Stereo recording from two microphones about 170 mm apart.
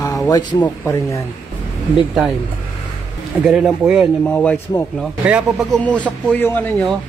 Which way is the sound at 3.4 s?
5° right (ahead or behind).